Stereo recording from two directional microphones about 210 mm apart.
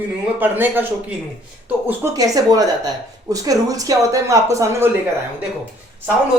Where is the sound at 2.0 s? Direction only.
15° right (ahead or behind).